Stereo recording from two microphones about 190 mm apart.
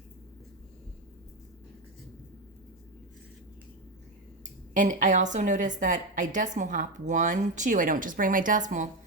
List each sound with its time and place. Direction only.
4.7 s a woman's voice: 40° right (ahead or behind)